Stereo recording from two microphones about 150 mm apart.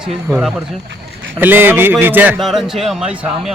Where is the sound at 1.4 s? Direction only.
15° right (ahead or behind).